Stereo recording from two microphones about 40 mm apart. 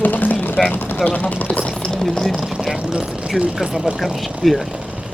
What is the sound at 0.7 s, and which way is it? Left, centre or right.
Speech, left.